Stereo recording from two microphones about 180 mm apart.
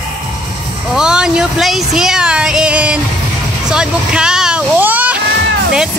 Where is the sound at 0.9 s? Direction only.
5° right (ahead or behind).